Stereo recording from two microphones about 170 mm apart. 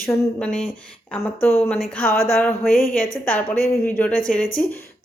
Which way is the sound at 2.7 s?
55° left (ahead or behind).